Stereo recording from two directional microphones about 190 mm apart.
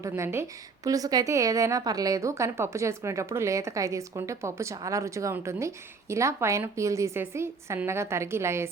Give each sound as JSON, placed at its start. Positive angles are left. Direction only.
{"t": 0.0, "sound": "a woman's voice", "side_deg": -15}